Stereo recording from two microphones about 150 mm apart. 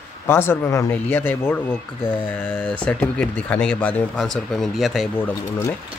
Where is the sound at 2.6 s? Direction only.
5° left (ahead or behind).